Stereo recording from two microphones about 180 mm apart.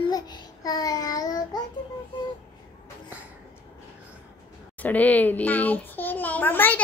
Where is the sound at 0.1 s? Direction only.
20° left (ahead or behind).